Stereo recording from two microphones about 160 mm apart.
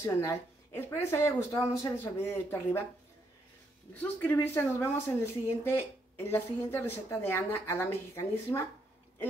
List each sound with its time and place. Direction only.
0.0 s a woman's voice: 20° left (ahead or behind)
3.9 s a woman's voice: 10° left (ahead or behind)